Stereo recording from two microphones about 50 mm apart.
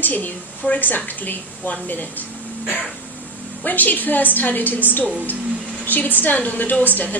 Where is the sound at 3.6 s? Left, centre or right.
Left.